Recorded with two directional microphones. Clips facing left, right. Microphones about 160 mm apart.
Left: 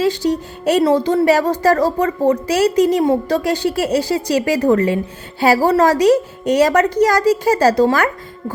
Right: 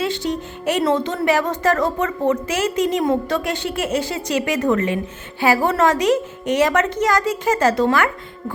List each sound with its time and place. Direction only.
0.0 s a woman's voice: 35° left (ahead or behind)